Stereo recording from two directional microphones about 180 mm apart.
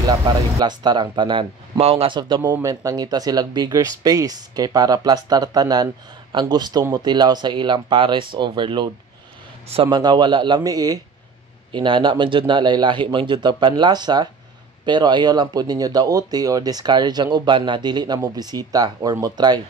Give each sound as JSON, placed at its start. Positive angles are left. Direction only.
{"t": 0.6, "sound": "speech", "side_deg": -25}